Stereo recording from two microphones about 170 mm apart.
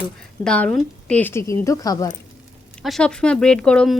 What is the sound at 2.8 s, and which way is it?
Speech, 5° left (ahead or behind).